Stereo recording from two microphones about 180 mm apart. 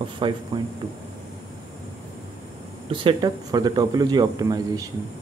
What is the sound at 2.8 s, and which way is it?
Speech, 30° right (ahead or behind).